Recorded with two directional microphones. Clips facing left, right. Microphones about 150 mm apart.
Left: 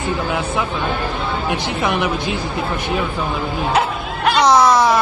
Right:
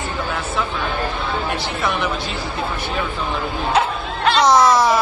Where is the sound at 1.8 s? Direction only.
20° left (ahead or behind).